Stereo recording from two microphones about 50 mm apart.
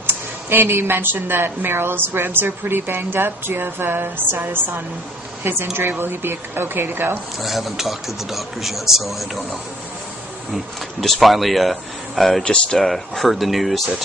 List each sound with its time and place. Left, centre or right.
0.0 s speech: right
7.3 s speech: centre